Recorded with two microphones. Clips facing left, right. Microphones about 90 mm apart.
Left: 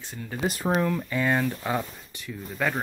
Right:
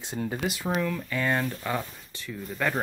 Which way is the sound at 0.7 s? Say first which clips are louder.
Left 4 dB; 30° left (ahead or behind).